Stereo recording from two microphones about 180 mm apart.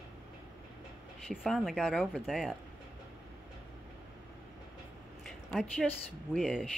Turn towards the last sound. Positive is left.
turn(degrees=0)  # may be behind; listen again after turning